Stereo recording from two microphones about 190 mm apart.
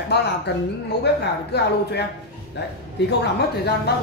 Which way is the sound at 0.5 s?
60° left (ahead or behind).